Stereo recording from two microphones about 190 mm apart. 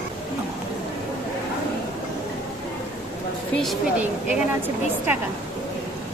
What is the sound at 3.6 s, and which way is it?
Speech, 5° right (ahead or behind).